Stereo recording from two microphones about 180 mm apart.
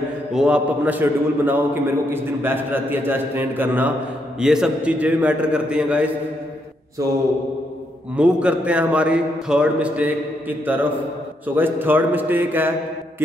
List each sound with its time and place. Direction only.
0.3 s a man's voice: 5° right (ahead or behind)
7.0 s a man's voice: 15° right (ahead or behind)
8.2 s a man's voice: 5° right (ahead or behind)